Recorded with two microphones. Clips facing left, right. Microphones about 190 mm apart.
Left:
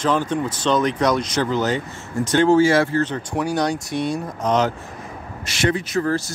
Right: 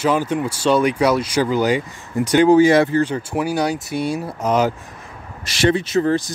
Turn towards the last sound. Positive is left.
turn(degrees=-20)  # may be behind; listen again after turning